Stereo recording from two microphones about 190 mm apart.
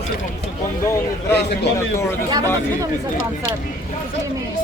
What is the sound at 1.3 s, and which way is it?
Speech, 60° left (ahead or behind).